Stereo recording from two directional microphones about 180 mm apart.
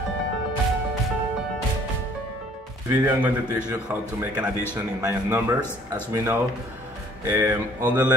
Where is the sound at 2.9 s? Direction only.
10° right (ahead or behind).